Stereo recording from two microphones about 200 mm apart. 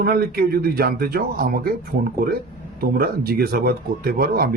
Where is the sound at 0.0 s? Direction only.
50° right (ahead or behind).